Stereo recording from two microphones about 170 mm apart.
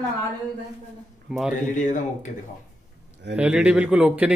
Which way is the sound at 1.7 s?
45° left (ahead or behind).